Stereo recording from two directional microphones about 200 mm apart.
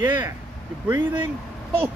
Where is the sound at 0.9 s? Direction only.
10° right (ahead or behind).